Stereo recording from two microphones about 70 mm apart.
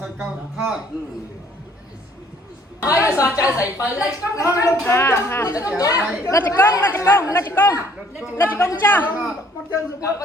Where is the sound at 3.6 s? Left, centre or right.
Right.